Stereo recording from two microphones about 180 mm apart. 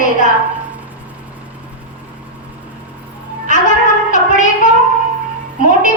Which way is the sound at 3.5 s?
45° left (ahead or behind).